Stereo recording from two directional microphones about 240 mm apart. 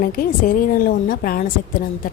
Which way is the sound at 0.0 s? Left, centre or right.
Left.